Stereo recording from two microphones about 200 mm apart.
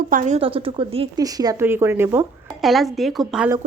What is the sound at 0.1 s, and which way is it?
Speech, 40° right (ahead or behind).